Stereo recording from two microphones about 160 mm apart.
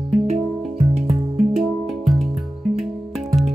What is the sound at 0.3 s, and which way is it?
Music, 40° right (ahead or behind).